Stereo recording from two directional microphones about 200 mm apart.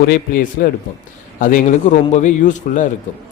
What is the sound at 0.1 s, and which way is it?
A man's voice, 45° left (ahead or behind).